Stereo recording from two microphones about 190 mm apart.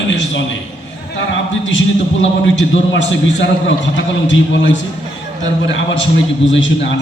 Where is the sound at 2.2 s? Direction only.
75° left (ahead or behind).